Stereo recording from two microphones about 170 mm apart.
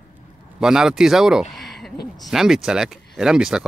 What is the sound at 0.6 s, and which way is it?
Speech, 5° right (ahead or behind).